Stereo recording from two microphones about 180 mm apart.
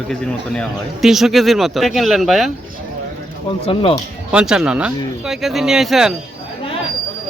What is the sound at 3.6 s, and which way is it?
Speech, 30° left (ahead or behind).